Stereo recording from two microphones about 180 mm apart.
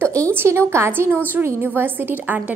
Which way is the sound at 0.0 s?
15° right (ahead or behind).